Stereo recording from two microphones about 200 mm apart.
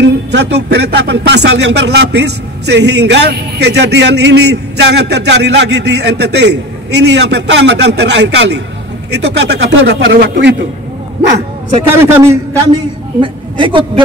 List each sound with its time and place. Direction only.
0.0 s speech: 60° right (ahead or behind)
11.9 s a man's voice: 10° right (ahead or behind)
13.2 s a woman's voice: 25° right (ahead or behind)